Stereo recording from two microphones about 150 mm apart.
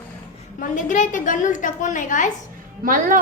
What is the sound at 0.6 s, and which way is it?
A woman's voice, 60° left (ahead or behind).